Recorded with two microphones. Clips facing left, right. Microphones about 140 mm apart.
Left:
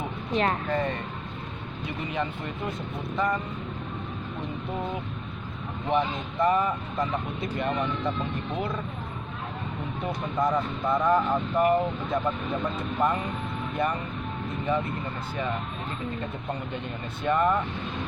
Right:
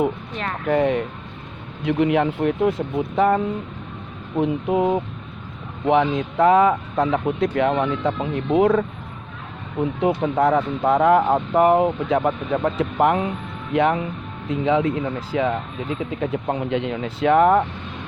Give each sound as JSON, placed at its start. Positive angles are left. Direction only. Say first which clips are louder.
{"t": 0.6, "sound": "speech", "louder": "right 9 dB", "side_deg": -80}
{"t": 4.4, "sound": "speech", "louder": "right 14 dB", "side_deg": -80}
{"t": 5.9, "sound": "speech", "louder": "right 8 dB", "side_deg": -90}
{"t": 10.0, "sound": "speech", "louder": "right 8 dB", "side_deg": -80}